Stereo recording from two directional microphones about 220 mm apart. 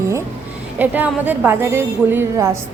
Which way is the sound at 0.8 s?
10° right (ahead or behind).